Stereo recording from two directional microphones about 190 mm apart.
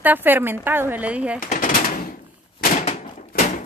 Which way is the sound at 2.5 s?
45° left (ahead or behind).